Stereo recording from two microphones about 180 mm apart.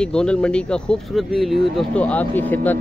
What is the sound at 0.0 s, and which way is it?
Speech, 5° left (ahead or behind).